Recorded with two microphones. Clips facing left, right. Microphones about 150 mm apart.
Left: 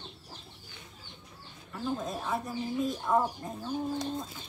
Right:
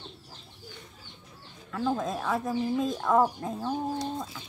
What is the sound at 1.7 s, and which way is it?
Speech, 90° right.